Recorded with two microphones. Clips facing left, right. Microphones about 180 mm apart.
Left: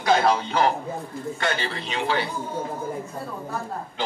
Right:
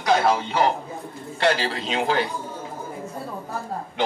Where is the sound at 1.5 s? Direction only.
90° right.